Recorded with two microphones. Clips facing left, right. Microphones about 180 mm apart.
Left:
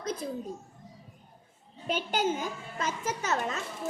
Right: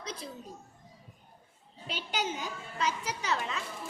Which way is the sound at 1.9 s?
45° left (ahead or behind).